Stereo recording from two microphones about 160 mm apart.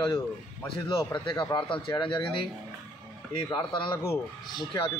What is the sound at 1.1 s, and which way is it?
A man's voice, 30° left (ahead or behind).